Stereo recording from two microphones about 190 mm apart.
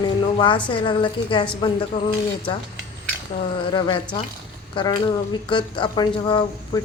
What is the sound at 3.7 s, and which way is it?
Speech, 25° left (ahead or behind).